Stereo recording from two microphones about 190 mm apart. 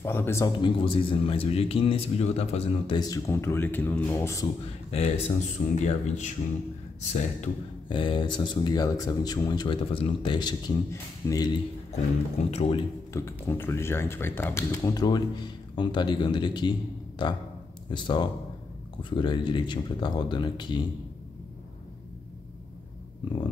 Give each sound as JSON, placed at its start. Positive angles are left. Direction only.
{"t": 0.0, "sound": "speech", "side_deg": 15}
{"t": 3.0, "sound": "speech", "side_deg": 15}
{"t": 4.9, "sound": "speech", "side_deg": 35}
{"t": 7.9, "sound": "speech", "side_deg": 25}
{"t": 11.9, "sound": "speech", "side_deg": 35}
{"t": 13.1, "sound": "speech", "side_deg": 15}
{"t": 17.8, "sound": "speech", "side_deg": 25}